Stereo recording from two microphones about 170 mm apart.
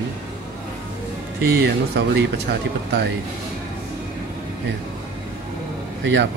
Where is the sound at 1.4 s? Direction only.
65° right (ahead or behind).